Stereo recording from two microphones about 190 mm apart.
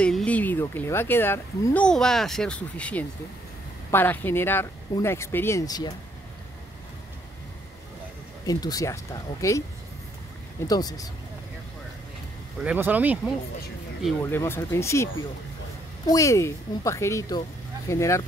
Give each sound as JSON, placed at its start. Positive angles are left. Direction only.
{"t": 0.0, "sound": "speech", "side_deg": 5}
{"t": 8.5, "sound": "speech", "side_deg": 20}
{"t": 10.7, "sound": "speech", "side_deg": 20}
{"t": 12.5, "sound": "speech", "side_deg": -10}
{"t": 14.2, "sound": "speech", "side_deg": 15}
{"t": 16.1, "sound": "speech", "side_deg": 15}